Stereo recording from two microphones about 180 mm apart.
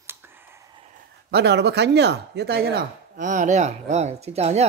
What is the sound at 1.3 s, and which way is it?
Speech, 70° right (ahead or behind).